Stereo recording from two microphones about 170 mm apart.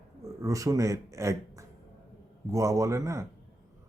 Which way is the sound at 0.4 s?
20° right (ahead or behind).